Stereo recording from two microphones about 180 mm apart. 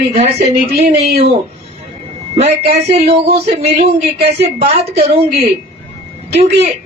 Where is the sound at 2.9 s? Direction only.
35° right (ahead or behind).